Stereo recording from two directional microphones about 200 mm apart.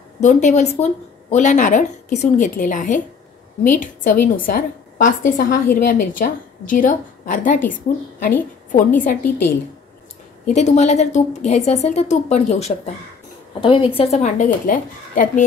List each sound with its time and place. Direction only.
0.2 s a woman's voice: 35° left (ahead or behind)
10.5 s a woman's voice: 35° left (ahead or behind)